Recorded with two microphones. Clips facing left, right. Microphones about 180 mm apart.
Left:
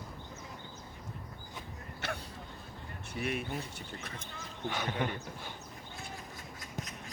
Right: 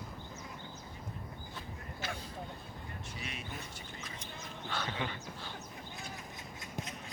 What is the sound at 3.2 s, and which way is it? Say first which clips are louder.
Speech: left 12 dB; 55° left (ahead or behind).